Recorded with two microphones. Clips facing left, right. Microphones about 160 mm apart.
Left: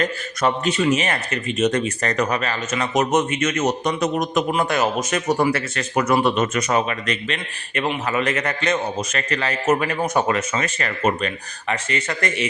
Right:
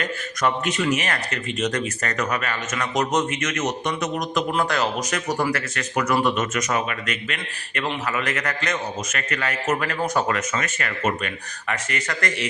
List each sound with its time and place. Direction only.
0.4 s speech: 25° left (ahead or behind)